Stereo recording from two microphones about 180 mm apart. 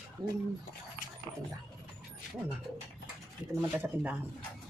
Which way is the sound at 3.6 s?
10° right (ahead or behind).